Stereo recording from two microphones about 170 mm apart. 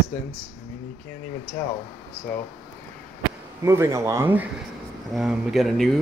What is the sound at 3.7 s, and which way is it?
Speech, 15° right (ahead or behind).